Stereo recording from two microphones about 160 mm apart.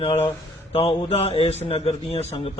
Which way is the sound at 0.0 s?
40° left (ahead or behind).